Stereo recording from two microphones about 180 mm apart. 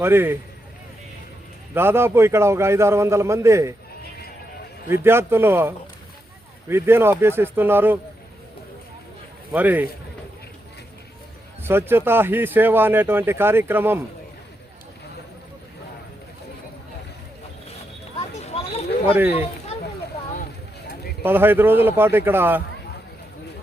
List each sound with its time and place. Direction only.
0.0 s speech: 10° right (ahead or behind)
1.7 s speech: 10° right (ahead or behind)
5.0 s speech: 15° right (ahead or behind)
9.5 s speech: 10° right (ahead or behind)
11.6 s speech: 10° right (ahead or behind)
18.4 s a sound: 35° left (ahead or behind)
21.2 s speech: 10° right (ahead or behind)